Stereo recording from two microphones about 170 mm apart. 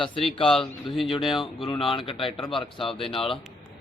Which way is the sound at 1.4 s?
30° left (ahead or behind).